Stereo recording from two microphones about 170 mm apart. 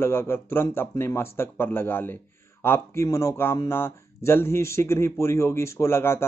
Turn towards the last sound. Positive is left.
turn(degrees=15)  # may be behind; listen again after turning